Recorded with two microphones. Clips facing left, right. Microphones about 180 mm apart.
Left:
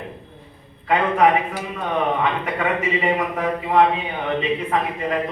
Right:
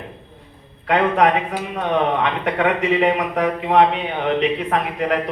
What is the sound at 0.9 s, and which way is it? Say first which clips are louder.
Speech: right 1 dB; 70° right (ahead or behind).